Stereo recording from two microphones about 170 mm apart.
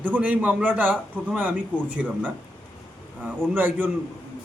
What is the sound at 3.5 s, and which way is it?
Speech, 10° right (ahead or behind).